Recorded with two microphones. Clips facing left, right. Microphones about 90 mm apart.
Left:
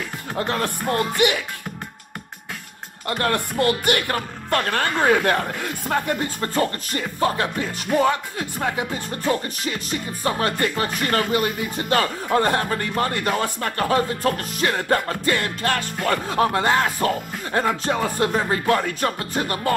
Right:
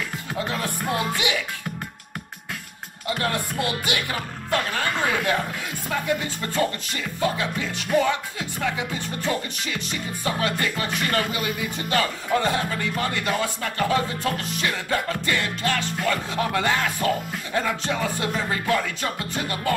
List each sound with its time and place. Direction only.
0.4 s speech: 60° left (ahead or behind)
0.8 s music: 5° right (ahead or behind)
3.1 s speech: 60° left (ahead or behind)
8.0 s music: 40° left (ahead or behind)
11.0 s speech: 40° left (ahead or behind)